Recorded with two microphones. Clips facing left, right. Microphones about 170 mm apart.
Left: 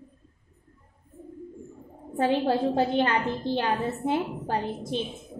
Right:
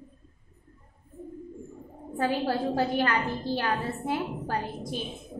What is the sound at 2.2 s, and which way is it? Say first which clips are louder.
A woman's voice: left 4 dB; 25° left (ahead or behind).